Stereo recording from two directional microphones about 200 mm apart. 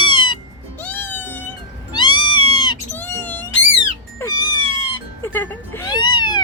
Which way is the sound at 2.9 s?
10° left (ahead or behind).